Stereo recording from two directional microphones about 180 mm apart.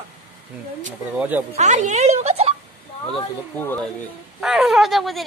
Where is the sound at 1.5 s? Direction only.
40° right (ahead or behind).